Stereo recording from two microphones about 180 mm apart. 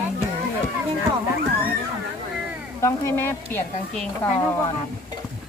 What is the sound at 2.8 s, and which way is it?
Speech, 15° left (ahead or behind).